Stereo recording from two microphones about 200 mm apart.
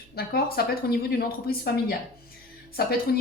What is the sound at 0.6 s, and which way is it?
Speech, 50° left (ahead or behind).